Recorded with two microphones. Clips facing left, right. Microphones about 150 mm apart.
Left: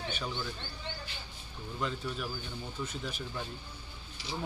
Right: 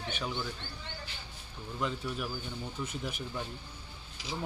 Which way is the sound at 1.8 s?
10° right (ahead or behind).